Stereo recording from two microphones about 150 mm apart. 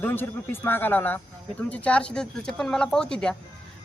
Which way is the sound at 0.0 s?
15° left (ahead or behind).